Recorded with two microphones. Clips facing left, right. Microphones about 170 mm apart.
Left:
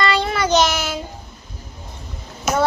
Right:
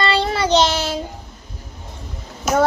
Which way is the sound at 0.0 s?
30° right (ahead or behind).